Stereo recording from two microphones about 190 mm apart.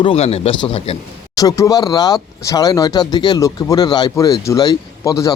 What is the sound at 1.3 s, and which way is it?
Speech, 15° left (ahead or behind).